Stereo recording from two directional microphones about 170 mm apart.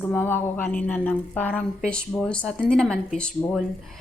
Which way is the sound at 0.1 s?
10° left (ahead or behind).